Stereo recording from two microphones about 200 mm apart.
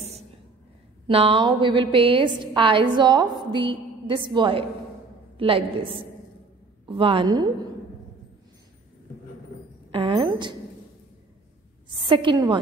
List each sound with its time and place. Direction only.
1.0 s a woman's voice: 25° right (ahead or behind)
9.8 s a sound: 25° right (ahead or behind)
12.0 s a woman's voice: 25° right (ahead or behind)